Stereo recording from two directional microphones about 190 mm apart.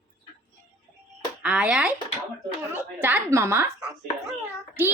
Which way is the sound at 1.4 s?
5° right (ahead or behind).